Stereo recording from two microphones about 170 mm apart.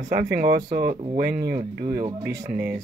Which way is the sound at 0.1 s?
65° right (ahead or behind).